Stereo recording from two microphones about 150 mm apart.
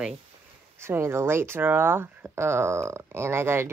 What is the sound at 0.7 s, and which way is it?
Speech, 15° right (ahead or behind).